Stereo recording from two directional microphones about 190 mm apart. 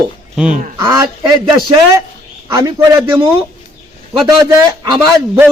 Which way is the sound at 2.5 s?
20° right (ahead or behind).